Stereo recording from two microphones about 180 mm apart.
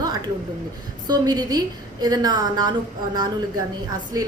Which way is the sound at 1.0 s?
25° right (ahead or behind).